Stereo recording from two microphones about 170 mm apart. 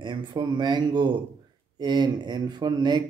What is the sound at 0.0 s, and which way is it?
Speech, 25° right (ahead or behind).